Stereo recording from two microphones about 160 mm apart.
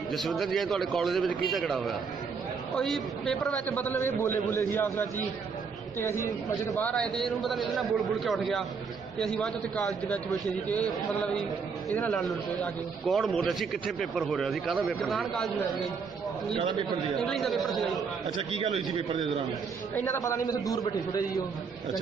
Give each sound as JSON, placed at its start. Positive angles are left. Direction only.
{"t": 0.1, "sound": "a man's voice", "side_deg": 0}
{"t": 11.9, "sound": "a man's voice", "side_deg": 5}
{"t": 17.2, "sound": "a man's voice", "side_deg": 0}
{"t": 18.5, "sound": "a man's voice", "side_deg": -40}
{"t": 20.0, "sound": "a man's voice", "side_deg": 15}